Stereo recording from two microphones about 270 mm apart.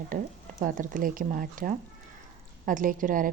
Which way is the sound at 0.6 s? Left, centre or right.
Right.